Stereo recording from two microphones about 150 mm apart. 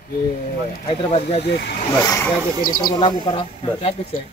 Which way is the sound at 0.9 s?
40° left (ahead or behind).